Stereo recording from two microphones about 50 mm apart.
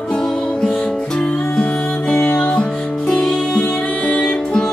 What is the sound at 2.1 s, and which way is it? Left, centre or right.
Music, left.